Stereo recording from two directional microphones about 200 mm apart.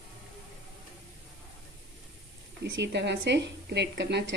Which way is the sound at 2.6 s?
55° right (ahead or behind).